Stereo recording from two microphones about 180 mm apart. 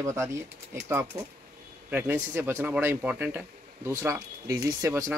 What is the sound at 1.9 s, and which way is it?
A man's voice, 10° right (ahead or behind).